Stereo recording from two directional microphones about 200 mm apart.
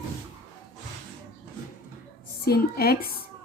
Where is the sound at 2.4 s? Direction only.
50° left (ahead or behind).